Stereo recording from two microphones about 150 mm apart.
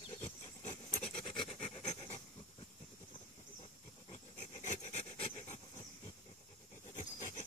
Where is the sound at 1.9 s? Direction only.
45° left (ahead or behind).